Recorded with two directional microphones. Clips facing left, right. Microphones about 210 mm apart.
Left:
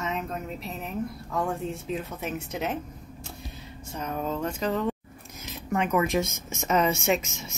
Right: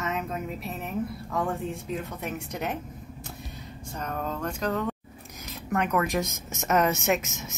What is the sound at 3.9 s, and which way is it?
Speech, 5° left (ahead or behind).